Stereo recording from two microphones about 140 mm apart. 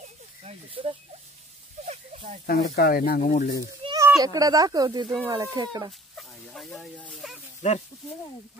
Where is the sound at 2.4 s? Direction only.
90° left.